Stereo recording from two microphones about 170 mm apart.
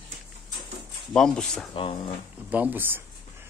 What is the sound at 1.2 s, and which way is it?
Speech, 5° left (ahead or behind).